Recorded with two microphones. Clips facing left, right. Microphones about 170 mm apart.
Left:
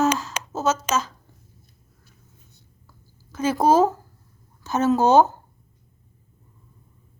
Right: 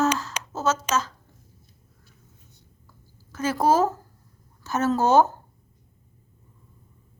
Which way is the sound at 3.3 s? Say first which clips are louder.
Left 3 dB; 20° left (ahead or behind).